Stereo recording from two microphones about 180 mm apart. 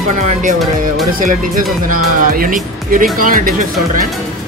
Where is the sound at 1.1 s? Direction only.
50° right (ahead or behind).